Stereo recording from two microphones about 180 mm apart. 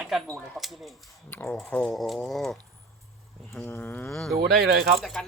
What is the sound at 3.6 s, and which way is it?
Speech, 10° left (ahead or behind).